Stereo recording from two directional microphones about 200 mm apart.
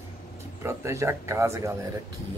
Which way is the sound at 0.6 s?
15° right (ahead or behind).